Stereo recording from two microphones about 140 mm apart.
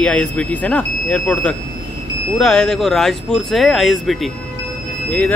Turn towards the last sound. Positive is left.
turn(degrees=10)  # may be behind; listen again after turning